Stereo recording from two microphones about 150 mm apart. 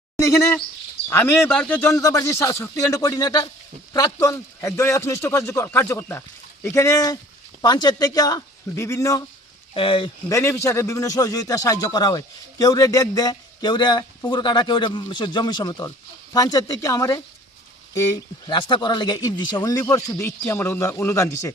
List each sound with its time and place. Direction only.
1.1 s a man's voice: 15° left (ahead or behind)
9.7 s speech: 35° left (ahead or behind)
10.2 s a man's voice: 20° left (ahead or behind)